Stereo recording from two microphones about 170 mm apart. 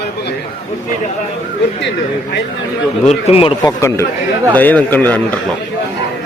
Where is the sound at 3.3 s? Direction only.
35° left (ahead or behind).